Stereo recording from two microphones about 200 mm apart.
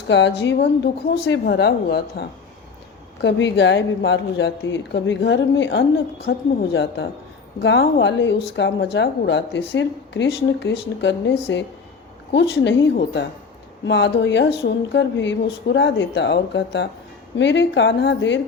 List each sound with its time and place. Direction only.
0.1 s speech: 60° left (ahead or behind)